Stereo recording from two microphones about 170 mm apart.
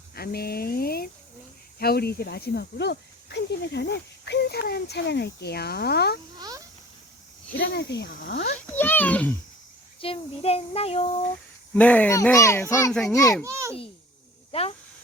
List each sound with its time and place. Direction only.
0.1 s speech: 65° left (ahead or behind)
6.4 s insect: 20° right (ahead or behind)
7.6 s speech: 85° left
8.6 s a child's voice: 10° left (ahead or behind)
10.0 s a child's voice: 35° left (ahead or behind)
11.7 s a child's voice: 10° left (ahead or behind)
12.9 s a child's voice: 5° left (ahead or behind)
13.1 s a child's voice: 20° left (ahead or behind)
13.4 s a child's voice: 15° right (ahead or behind)
14.5 s a child's voice: 35° left (ahead or behind)